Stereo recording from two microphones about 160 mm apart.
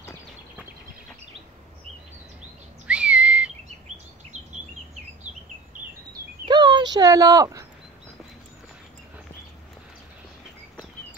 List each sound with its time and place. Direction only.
2.9 s whistle: 5° right (ahead or behind)
5.3 s bird: 45° right (ahead or behind)
6.4 s a sound: 30° right (ahead or behind)